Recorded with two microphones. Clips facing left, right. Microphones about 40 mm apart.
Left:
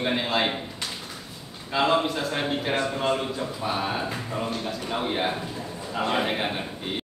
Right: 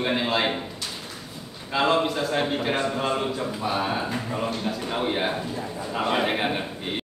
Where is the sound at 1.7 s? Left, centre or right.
Centre.